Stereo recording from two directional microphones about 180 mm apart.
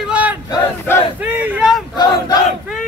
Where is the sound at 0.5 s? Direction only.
15° left (ahead or behind).